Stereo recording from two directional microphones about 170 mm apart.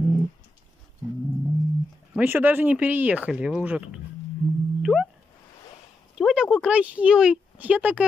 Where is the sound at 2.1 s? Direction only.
10° right (ahead or behind).